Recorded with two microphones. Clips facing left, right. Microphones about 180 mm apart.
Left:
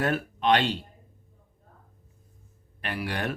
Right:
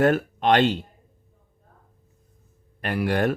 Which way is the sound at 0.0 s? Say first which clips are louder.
Right 6 dB; 50° right (ahead or behind).